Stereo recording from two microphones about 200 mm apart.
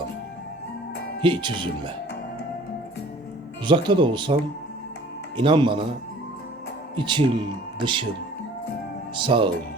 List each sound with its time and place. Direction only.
1.2 s speech: 25° right (ahead or behind)
3.7 s speech: 25° right (ahead or behind)
5.4 s speech: 25° right (ahead or behind)
6.9 s speech: 25° right (ahead or behind)
9.1 s speech: 25° right (ahead or behind)